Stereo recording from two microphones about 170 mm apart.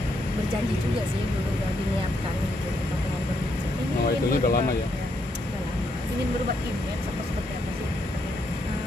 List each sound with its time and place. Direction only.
4.3 s speech: 60° left (ahead or behind)